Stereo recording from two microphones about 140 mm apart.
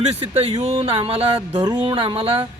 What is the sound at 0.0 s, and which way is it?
Speech, 45° right (ahead or behind).